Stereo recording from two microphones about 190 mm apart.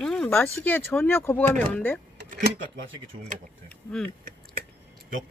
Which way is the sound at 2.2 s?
50° right (ahead or behind).